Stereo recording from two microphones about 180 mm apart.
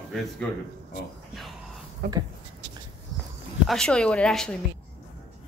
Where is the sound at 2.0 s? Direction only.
50° right (ahead or behind).